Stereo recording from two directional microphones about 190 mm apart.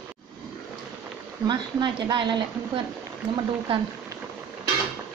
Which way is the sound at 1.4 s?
25° right (ahead or behind).